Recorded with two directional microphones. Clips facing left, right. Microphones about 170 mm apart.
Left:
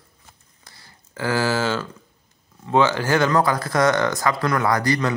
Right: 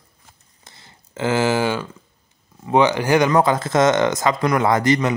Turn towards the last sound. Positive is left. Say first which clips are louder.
# right 3 dB
turn(degrees=-20)  # may be behind; listen again after turning